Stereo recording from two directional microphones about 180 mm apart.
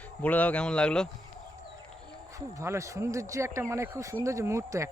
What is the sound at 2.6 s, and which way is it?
Speech, 15° right (ahead or behind).